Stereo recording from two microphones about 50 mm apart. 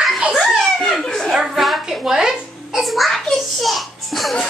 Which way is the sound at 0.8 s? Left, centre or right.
Centre.